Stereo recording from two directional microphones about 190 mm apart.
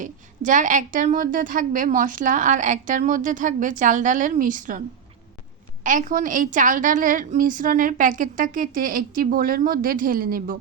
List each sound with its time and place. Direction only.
0.0 s a woman's voice: 40° right (ahead or behind)
5.8 s a woman's voice: 45° right (ahead or behind)